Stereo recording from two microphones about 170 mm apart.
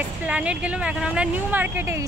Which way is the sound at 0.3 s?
10° right (ahead or behind).